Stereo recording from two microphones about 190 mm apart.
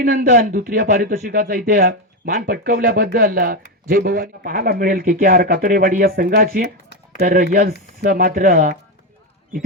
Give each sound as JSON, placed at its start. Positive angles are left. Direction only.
{"t": 0.0, "sound": "speech", "side_deg": -45}